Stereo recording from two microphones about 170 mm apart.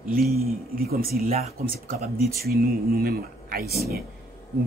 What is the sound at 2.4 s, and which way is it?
Speech, 60° right (ahead or behind).